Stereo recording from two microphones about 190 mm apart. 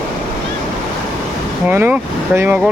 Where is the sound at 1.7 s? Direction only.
10° right (ahead or behind).